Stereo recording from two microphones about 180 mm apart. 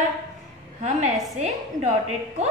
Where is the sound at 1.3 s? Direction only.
40° right (ahead or behind).